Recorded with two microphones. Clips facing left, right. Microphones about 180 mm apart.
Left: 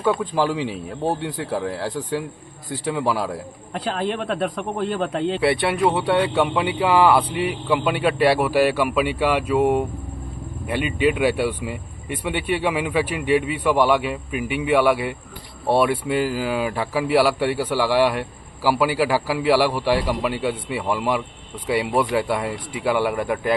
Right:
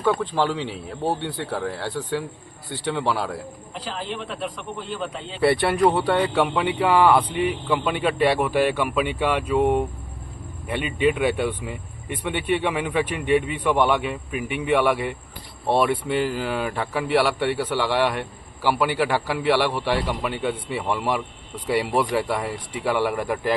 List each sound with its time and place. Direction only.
0.0 s a man's voice: 5° left (ahead or behind)
3.7 s a man's voice: 60° left (ahead or behind)
5.4 s a man's voice: centre (ahead or behind)
11.0 s a man's voice: 5° left (ahead or behind)